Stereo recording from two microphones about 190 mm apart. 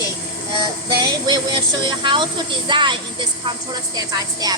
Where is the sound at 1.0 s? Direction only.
25° right (ahead or behind).